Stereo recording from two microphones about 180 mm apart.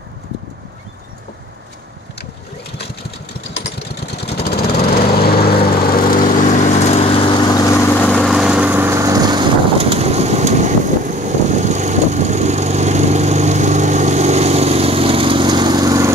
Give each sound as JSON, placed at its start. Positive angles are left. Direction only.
{"t": 4.4, "sound": "lawn mower", "side_deg": 65}
{"t": 9.8, "sound": "vehicle", "side_deg": -35}